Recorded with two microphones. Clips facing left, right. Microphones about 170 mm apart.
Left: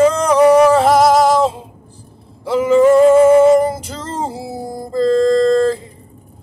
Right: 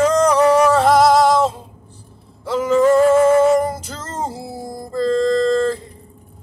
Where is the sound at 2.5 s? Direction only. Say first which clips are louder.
Left 4 dB; 10° left (ahead or behind); by 4.3 s 30° left (ahead or behind).